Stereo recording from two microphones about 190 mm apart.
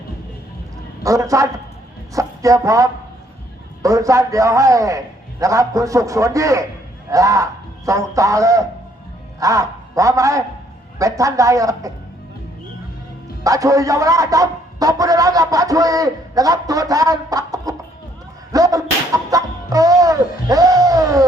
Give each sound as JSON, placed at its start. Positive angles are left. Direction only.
{"t": 1.0, "sound": "a man's voice", "side_deg": -15}
{"t": 13.4, "sound": "a man's voice", "side_deg": -15}
{"t": 18.5, "sound": "whip", "side_deg": -20}